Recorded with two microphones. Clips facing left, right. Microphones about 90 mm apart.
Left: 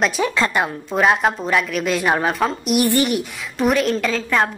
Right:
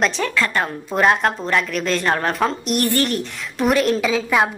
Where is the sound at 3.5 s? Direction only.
Centre (ahead or behind).